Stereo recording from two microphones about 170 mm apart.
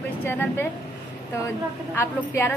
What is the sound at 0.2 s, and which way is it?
Speech, 15° left (ahead or behind).